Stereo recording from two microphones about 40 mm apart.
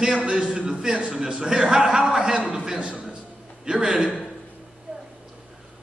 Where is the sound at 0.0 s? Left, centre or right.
Right.